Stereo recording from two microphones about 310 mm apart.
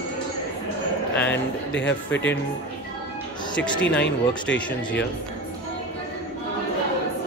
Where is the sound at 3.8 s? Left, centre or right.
Centre.